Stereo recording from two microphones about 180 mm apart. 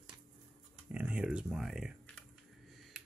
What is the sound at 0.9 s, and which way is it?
Speech, 5° right (ahead or behind).